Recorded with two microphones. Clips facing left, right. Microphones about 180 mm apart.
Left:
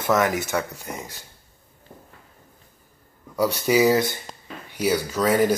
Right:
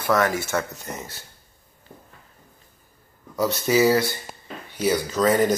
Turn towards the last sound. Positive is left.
turn(degrees=10)  # may be behind; listen again after turning